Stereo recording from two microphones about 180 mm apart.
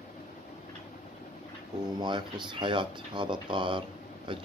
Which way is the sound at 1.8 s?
25° right (ahead or behind).